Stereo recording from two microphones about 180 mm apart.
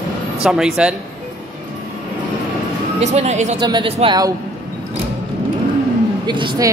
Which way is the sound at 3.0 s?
40° right (ahead or behind).